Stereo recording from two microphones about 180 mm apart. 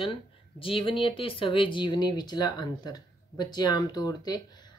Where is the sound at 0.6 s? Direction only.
30° left (ahead or behind).